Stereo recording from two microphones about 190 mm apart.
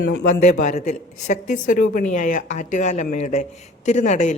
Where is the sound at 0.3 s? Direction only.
40° left (ahead or behind).